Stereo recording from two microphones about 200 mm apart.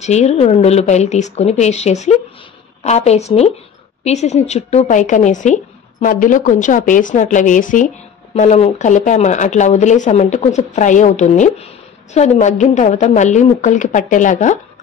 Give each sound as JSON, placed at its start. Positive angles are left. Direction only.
{"t": 0.0, "sound": "speech", "side_deg": 35}